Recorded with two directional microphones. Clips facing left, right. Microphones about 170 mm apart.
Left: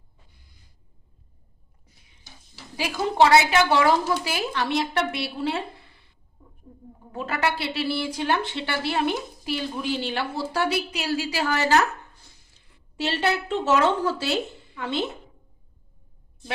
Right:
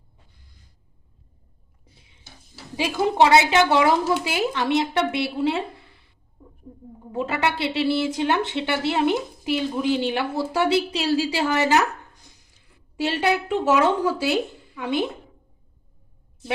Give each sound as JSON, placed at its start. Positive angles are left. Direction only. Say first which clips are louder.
{"t": 1.8, "sound": "dishes", "louder": "right 5 dB", "side_deg": -30}
{"t": 2.7, "sound": "speech", "louder": "right 2 dB", "side_deg": -20}
{"t": 7.0, "sound": "a woman's voice", "louder": "right 2 dB", "side_deg": -20}